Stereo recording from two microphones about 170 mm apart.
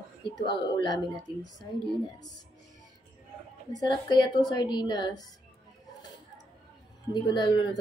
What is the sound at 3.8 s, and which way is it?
Speech, 25° left (ahead or behind).